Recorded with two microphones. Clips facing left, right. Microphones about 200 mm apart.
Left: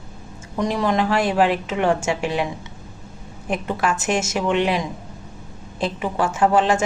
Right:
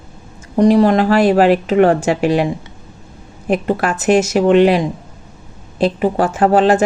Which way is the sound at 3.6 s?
60° right (ahead or behind).